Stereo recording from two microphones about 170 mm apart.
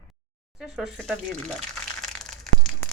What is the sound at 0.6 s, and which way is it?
Crumpling, centre (ahead or behind).